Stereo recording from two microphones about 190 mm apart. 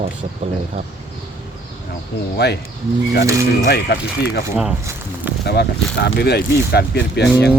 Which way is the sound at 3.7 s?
60° left (ahead or behind).